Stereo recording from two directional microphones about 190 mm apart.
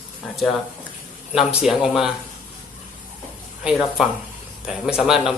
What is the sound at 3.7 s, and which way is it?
Speech, centre (ahead or behind).